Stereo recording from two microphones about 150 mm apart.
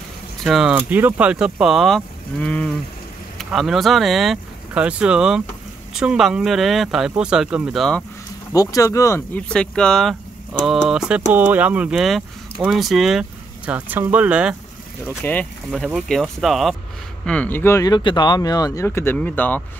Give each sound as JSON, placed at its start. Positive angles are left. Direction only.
{"t": 0.4, "sound": "speech", "side_deg": 0}
{"t": 0.7, "sound": "speech", "side_deg": -10}
{"t": 8.5, "sound": "speech", "side_deg": 25}
{"t": 9.5, "sound": "speech", "side_deg": 5}
{"t": 15.0, "sound": "speech", "side_deg": 10}